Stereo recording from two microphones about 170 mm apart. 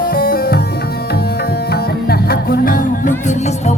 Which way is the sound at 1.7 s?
70° left (ahead or behind).